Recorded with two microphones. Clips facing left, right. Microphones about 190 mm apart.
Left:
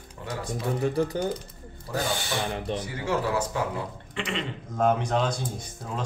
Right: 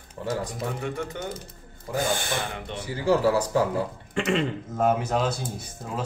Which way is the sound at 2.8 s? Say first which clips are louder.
Right 10 dB; 30° right (ahead or behind).